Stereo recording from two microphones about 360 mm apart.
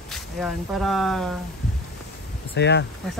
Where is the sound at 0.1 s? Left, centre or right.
Centre.